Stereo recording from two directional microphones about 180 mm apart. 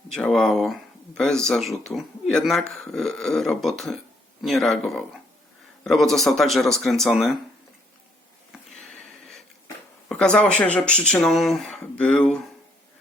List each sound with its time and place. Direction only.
0.1 s speech: 5° left (ahead or behind)
8.8 s a sound: centre (ahead or behind)
10.1 s speech: 5° left (ahead or behind)